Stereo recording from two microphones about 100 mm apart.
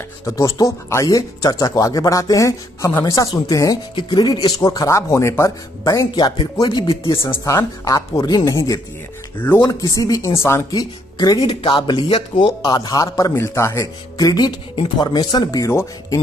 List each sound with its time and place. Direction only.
0.2 s speech: 30° left (ahead or behind)
6.1 s speech: 45° left (ahead or behind)
7.1 s speech: 25° left (ahead or behind)
10.7 s speech: 40° left (ahead or behind)
15.6 s speech: 25° left (ahead or behind)